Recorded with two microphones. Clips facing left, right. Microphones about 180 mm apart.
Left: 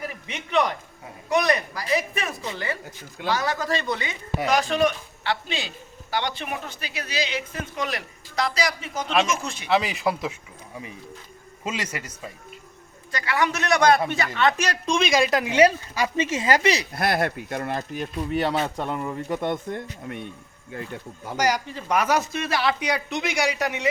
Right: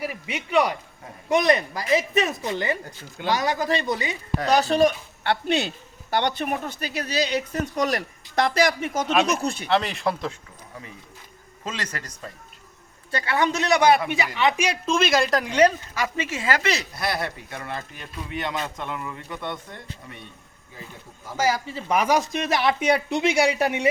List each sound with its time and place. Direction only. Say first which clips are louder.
0.0 s a man's voice: right 4 dB; 10° right (ahead or behind)
1.3 s speech: right 2 dB; 20° right (ahead or behind)
3.8 s speech: right 2 dB; 40° right (ahead or behind)
5.2 s a man's voice: right 5 dB; 55° right (ahead or behind)
9.3 s speech: right 3 dB; 35° right (ahead or behind)
9.6 s speech: left 2 dB; centre (ahead or behind)
11.6 s a man's voice: left 2 dB; 10° left (ahead or behind)
13.1 s speech: right 1 dB; 30° right (ahead or behind); by 16.0 s 10° left (ahead or behind)
16.1 s speech: left 5 dB; 20° left (ahead or behind)
16.9 s speech: left 4 dB; 50° left (ahead or behind)
18.3 s a man's voice: left 5 dB; 35° left (ahead or behind); by 20.2 s 50° left (ahead or behind)
20.7 s speech: left 8 dB; 65° left (ahead or behind)
21.3 s speech: even; 5° right (ahead or behind); by 23.9 s 30° right (ahead or behind)